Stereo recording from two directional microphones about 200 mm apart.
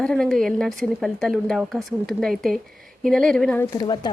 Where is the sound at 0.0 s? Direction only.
5° left (ahead or behind).